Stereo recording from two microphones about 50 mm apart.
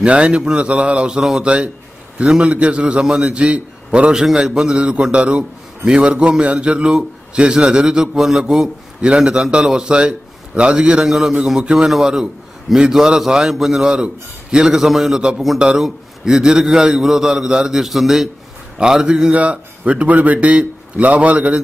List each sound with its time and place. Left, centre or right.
0.0 s a man's voice: right
4.1 s a man's voice: centre
14.7 s a man's voice: centre
18.8 s a man's voice: centre
19.3 s a man's voice: right